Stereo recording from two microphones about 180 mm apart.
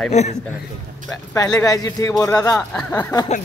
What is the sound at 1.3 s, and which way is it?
A man's voice, 20° left (ahead or behind).